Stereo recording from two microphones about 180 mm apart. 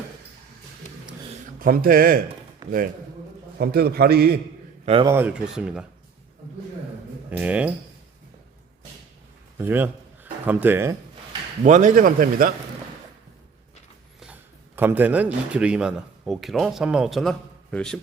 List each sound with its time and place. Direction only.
1.5 s a man's voice: 55° right (ahead or behind)
2.6 s a man's voice: 20° right (ahead or behind)
3.6 s a man's voice: 60° right (ahead or behind)
5.0 s a man's voice: 10° right (ahead or behind)
7.3 s speech: 10° right (ahead or behind)
9.6 s speech: 10° right (ahead or behind)
11.6 s a man's voice: 45° right (ahead or behind)
14.8 s a man's voice: 10° right (ahead or behind)